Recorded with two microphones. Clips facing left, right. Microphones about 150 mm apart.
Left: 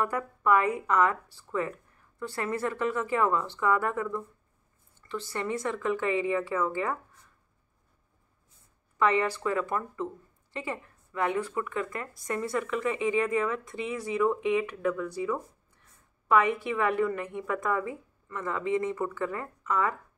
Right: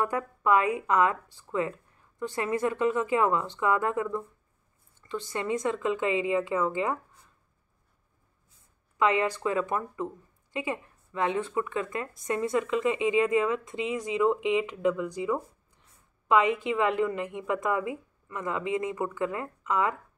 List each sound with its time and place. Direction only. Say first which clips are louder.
0.0 s speech: right 1 dB; 20° right (ahead or behind)
8.9 s speech: even; 15° right (ahead or behind)